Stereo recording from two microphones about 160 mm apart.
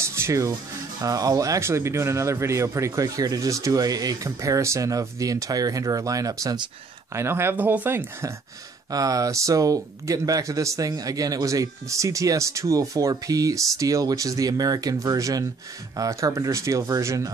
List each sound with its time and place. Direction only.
0.1 s music: 20° right (ahead or behind)
1.0 s speech: 20° right (ahead or behind)